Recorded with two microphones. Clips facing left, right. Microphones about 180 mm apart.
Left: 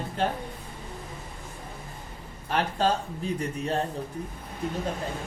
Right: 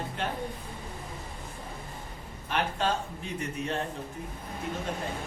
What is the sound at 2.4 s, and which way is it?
A man's voice, 35° left (ahead or behind).